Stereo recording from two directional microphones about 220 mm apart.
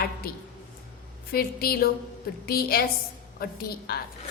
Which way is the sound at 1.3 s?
45° left (ahead or behind).